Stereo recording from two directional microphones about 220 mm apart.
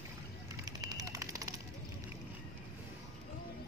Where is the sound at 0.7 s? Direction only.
15° right (ahead or behind).